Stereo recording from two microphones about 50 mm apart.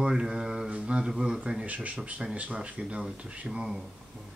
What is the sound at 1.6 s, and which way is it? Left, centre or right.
Speech, right.